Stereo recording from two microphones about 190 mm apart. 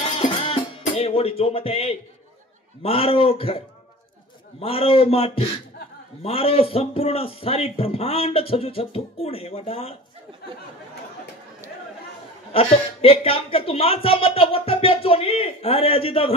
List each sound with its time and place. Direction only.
0.1 s music: 30° left (ahead or behind)
2.8 s a man's voice: 30° left (ahead or behind)
12.5 s speech: 30° left (ahead or behind)